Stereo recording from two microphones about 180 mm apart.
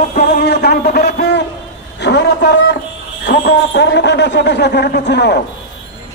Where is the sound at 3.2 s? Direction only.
70° left (ahead or behind).